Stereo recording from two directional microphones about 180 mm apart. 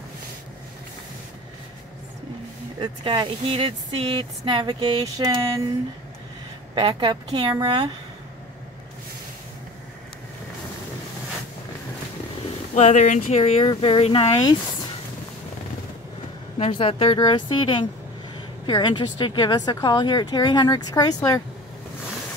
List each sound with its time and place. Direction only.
2.8 s speech: 25° right (ahead or behind)
6.7 s speech: 25° right (ahead or behind)
12.7 s speech: 40° left (ahead or behind)
16.5 s speech: 30° left (ahead or behind)